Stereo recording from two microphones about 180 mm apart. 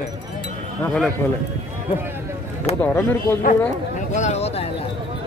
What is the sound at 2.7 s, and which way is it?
Speech, 35° left (ahead or behind).